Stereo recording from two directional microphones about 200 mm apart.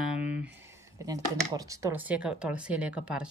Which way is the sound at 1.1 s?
15° right (ahead or behind).